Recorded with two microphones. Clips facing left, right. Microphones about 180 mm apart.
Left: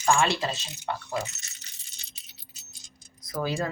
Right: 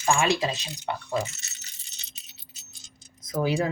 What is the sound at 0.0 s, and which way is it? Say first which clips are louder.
Speech: right 1 dB; 15° right (ahead or behind).